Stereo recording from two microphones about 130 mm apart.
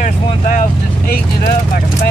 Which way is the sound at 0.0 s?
90° left.